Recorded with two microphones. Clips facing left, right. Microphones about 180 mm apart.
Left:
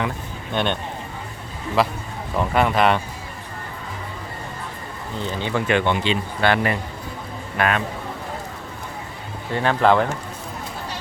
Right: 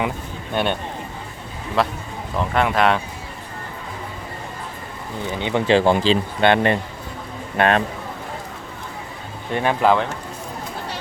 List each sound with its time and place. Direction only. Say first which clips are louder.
0.5 s speech: right 1 dB; 5° right (ahead or behind)
1.8 s speech: even; centre (ahead or behind)
5.2 s speech: right 2 dB; 20° right (ahead or behind); by 6.1 s 35° right (ahead or behind)
6.4 s a man's voice: right 3 dB; 25° right (ahead or behind)
9.5 s speech: right 1 dB; 20° right (ahead or behind)
9.8 s speech: left 1 dB; centre (ahead or behind)